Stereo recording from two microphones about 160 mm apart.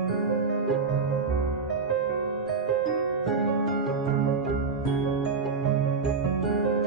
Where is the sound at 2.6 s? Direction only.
Centre (ahead or behind).